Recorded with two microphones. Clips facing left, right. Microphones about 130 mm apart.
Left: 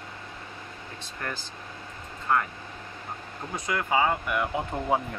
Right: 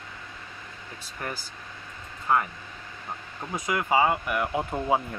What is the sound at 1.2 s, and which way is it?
Speech, 10° right (ahead or behind).